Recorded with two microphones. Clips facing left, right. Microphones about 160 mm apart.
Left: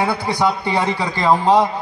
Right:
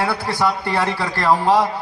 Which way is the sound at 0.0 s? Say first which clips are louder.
Left 2 dB; 15° left (ahead or behind).